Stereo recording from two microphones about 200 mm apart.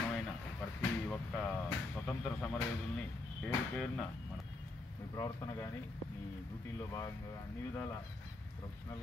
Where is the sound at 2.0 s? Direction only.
5° left (ahead or behind).